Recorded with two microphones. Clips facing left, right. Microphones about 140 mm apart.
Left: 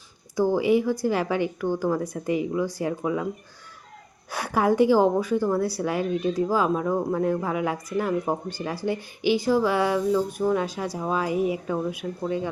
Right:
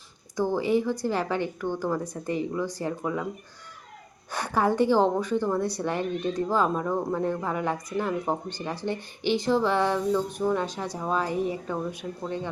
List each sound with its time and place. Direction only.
0.3 s a woman's voice: 10° left (ahead or behind)
4.3 s a woman's voice: 10° left (ahead or behind)